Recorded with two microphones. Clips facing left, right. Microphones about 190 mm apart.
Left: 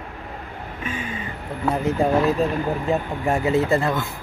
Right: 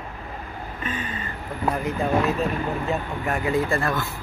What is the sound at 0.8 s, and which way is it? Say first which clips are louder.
Speech: left 2 dB; 10° left (ahead or behind).